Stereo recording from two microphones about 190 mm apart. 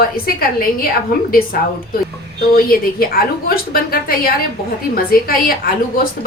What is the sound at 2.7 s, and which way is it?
A woman's voice, 50° left (ahead or behind).